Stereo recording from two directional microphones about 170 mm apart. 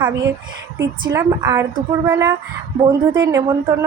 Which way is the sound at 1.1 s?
15° right (ahead or behind).